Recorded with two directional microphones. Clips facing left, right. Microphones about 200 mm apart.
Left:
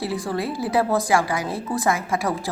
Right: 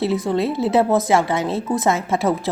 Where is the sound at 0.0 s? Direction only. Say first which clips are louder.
Right 6 dB; 20° right (ahead or behind).